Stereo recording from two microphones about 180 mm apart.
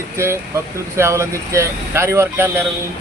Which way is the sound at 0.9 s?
15° right (ahead or behind).